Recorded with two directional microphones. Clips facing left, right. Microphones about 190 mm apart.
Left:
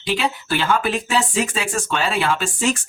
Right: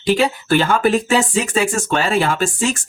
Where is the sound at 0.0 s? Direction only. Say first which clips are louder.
Right 6 dB; 45° right (ahead or behind).